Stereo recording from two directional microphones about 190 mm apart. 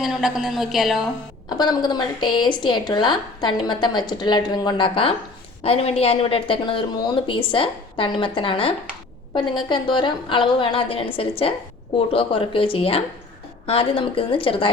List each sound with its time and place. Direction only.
0.0 s a woman's voice: centre (ahead or behind)
1.5 s a woman's voice: 20° left (ahead or behind)